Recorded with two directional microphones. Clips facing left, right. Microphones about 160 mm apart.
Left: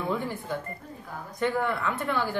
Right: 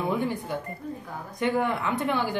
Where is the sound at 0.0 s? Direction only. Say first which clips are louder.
Right 3 dB; 15° right (ahead or behind).